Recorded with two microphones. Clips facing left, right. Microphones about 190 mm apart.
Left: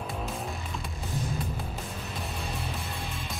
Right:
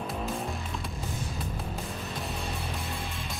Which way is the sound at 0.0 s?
Centre (ahead or behind).